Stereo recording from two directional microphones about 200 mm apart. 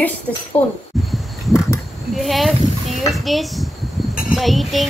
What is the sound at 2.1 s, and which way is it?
Speech, centre (ahead or behind).